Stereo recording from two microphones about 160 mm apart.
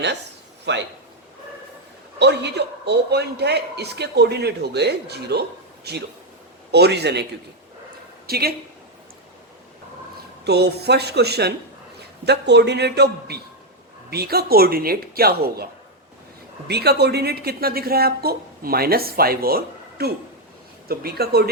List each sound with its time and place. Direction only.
0.7 s a man's voice: 90° right
2.1 s a man's voice: 90° right
8.3 s speech: 75° right (ahead or behind)
10.4 s a man's voice: 90° right; by 15.6 s 75° right (ahead or behind)
16.6 s speech: 90° right